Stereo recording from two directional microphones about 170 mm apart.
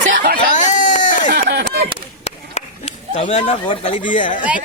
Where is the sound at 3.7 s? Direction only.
40° left (ahead or behind).